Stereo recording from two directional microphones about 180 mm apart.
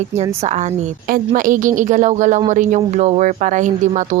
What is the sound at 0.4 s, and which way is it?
Speech, 40° right (ahead or behind).